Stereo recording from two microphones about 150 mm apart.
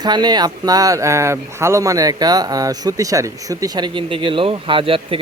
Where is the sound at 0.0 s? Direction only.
30° right (ahead or behind).